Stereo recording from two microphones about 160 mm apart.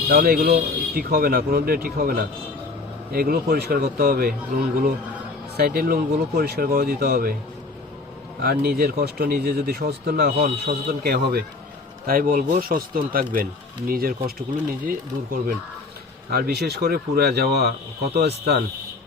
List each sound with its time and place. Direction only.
0.1 s speech: 65° right (ahead or behind)
5.5 s speech: 70° right (ahead or behind)
8.4 s speech: 70° right (ahead or behind)
12.0 s speech: 60° right (ahead or behind)
16.3 s speech: 80° right